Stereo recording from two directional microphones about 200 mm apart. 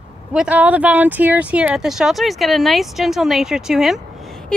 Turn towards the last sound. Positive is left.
turn(degrees=0)  # may be behind; listen again after turning